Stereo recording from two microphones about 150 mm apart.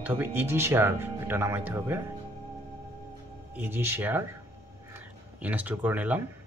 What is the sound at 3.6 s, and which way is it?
Speech, 15° right (ahead or behind).